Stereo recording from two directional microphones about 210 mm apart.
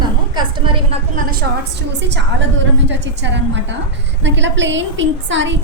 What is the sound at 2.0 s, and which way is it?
A woman's voice, 55° right (ahead or behind).